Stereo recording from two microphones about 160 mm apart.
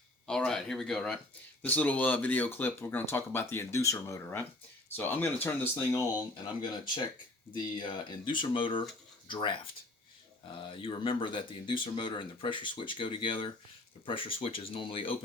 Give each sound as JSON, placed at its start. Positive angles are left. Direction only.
{"t": 0.3, "sound": "speech", "side_deg": 5}